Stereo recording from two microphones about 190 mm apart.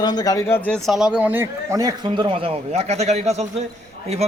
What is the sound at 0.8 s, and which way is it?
A man's voice, centre (ahead or behind).